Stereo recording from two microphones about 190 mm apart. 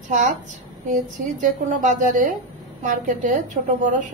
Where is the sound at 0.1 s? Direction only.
40° right (ahead or behind).